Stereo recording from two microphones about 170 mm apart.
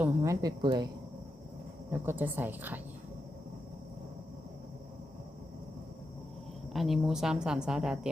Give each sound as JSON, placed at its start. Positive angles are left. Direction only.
{"t": 0.0, "sound": "speech", "side_deg": -15}
{"t": 1.9, "sound": "a woman's voice", "side_deg": -10}
{"t": 6.7, "sound": "speech", "side_deg": 0}